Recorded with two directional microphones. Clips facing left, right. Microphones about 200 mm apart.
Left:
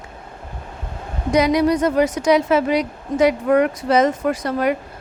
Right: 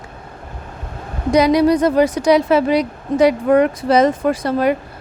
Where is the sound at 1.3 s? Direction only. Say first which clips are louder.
Right 3 dB; 35° right (ahead or behind).